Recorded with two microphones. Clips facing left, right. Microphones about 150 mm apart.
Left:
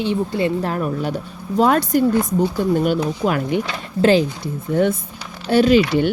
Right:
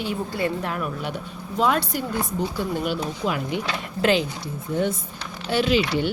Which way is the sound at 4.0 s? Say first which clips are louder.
Left 6 dB; 35° left (ahead or behind).